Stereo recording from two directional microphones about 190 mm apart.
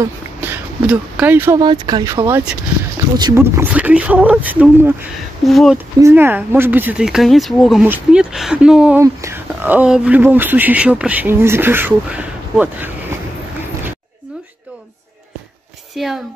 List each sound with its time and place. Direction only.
0.0 s speech: 10° right (ahead or behind)
1.6 s speech: 20° right (ahead or behind); by 5.8 s centre (ahead or behind)
5.9 s speech: 15° right (ahead or behind)
16.0 s speech: centre (ahead or behind)